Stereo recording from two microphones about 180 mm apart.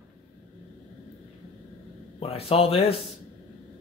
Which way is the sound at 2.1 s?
35° left (ahead or behind).